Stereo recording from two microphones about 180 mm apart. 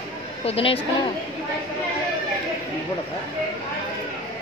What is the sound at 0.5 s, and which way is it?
Speech, 30° left (ahead or behind).